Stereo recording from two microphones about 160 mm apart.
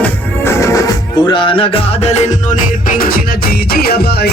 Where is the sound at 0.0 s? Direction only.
15° left (ahead or behind).